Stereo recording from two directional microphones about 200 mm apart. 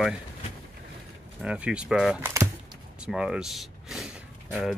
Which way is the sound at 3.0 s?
5° right (ahead or behind).